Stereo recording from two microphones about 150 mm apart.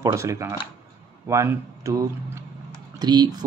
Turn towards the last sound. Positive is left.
turn(degrees=-25)  # may be behind; listen again after turning